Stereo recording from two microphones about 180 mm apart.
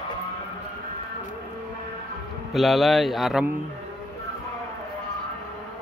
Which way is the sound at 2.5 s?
Centre (ahead or behind).